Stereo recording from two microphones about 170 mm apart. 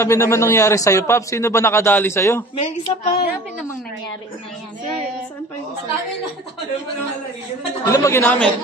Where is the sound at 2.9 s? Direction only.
30° left (ahead or behind).